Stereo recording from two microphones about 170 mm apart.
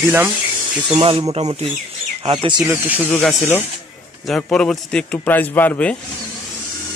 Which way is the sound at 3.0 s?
10° left (ahead or behind).